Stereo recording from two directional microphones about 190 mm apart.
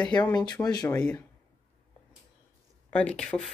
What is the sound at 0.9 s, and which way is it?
Speech, 5° left (ahead or behind).